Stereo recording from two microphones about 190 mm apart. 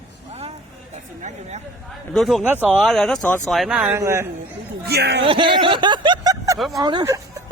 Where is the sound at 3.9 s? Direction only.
15° right (ahead or behind).